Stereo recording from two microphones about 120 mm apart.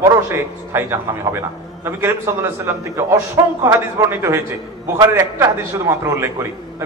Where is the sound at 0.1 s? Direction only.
20° right (ahead or behind).